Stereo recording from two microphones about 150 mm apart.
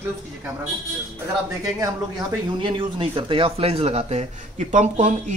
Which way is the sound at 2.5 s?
35° right (ahead or behind).